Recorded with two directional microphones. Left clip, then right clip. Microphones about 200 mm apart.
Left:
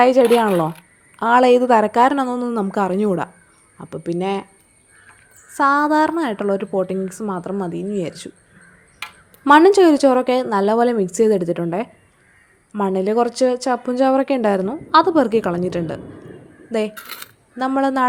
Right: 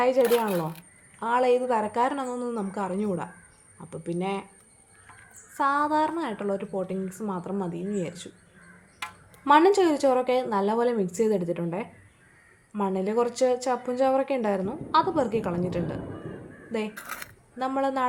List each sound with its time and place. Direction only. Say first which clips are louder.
0.0 s a woman's voice: left 9 dB; 45° left (ahead or behind)
5.5 s speech: left 8 dB; 40° left (ahead or behind)
9.4 s speech: left 8 dB; 35° left (ahead or behind)
17.6 s speech: left 8 dB; 35° left (ahead or behind)